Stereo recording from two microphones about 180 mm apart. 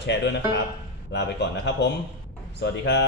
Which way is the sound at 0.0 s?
75° left (ahead or behind).